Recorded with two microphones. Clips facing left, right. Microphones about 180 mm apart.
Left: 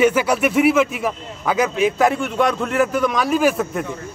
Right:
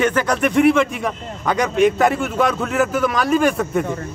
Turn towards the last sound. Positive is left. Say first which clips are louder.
# right 1 dB
turn(degrees=0)  # may be behind; listen again after turning